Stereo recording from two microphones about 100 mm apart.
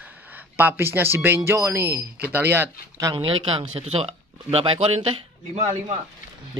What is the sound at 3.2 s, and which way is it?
Speech, 60° right (ahead or behind).